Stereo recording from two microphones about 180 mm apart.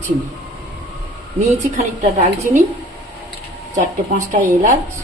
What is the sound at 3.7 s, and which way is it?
Speech, 45° right (ahead or behind).